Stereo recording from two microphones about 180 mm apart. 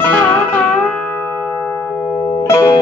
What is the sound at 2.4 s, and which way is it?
Music, 20° left (ahead or behind).